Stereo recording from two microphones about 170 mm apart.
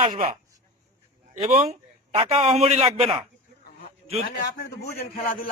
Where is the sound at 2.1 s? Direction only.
35° right (ahead or behind).